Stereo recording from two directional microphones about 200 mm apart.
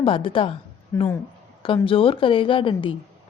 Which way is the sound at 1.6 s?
25° left (ahead or behind).